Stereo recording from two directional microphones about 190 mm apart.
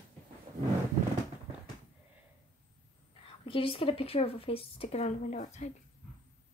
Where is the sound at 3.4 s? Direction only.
30° left (ahead or behind).